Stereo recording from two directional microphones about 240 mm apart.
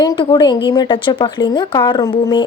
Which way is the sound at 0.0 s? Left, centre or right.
Centre.